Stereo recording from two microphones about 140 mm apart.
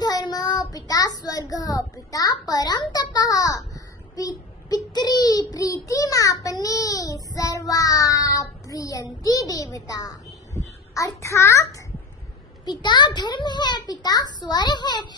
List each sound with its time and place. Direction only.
0.0 s child singing: 30° left (ahead or behind)
12.6 s a child's voice: 35° left (ahead or behind)